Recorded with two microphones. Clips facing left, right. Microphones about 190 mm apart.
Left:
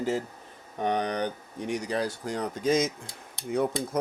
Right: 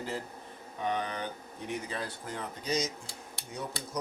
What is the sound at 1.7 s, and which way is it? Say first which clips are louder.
Speech: left 6 dB; 90° left.